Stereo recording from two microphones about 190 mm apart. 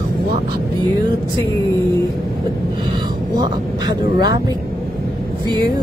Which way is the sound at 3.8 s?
20° right (ahead or behind).